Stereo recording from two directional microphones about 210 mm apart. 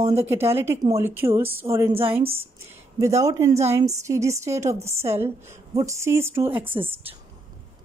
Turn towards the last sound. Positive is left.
turn(degrees=-10)  # may be behind; listen again after turning